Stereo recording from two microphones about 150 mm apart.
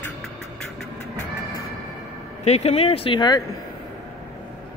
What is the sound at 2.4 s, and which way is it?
Speech, 45° left (ahead or behind).